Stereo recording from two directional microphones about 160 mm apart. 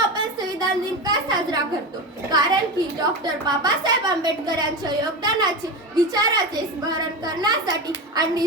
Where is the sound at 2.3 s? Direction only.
25° right (ahead or behind).